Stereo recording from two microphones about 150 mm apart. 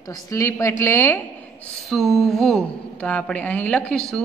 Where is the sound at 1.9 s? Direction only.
Centre (ahead or behind).